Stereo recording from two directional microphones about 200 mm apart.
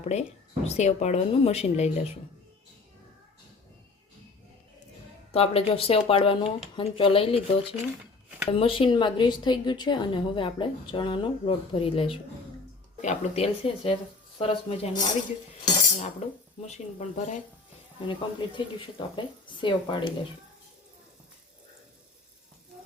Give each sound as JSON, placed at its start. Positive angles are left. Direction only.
{"t": 0.0, "sound": "speech", "side_deg": 35}
{"t": 5.3, "sound": "a woman's voice", "side_deg": 30}
{"t": 16.6, "sound": "speech", "side_deg": 35}
{"t": 18.0, "sound": "a woman's voice", "side_deg": 25}